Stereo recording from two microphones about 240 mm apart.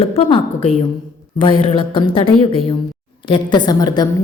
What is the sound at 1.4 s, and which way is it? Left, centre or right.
A woman's voice, left.